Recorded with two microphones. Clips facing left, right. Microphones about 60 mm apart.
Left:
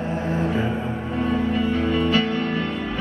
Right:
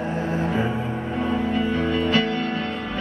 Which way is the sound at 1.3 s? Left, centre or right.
Centre.